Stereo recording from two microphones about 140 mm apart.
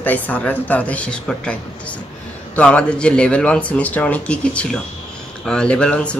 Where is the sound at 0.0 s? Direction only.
10° left (ahead or behind).